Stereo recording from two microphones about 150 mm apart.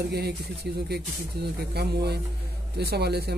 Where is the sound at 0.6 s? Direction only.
90° right.